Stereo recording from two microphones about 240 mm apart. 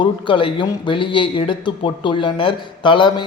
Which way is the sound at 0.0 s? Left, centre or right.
Left.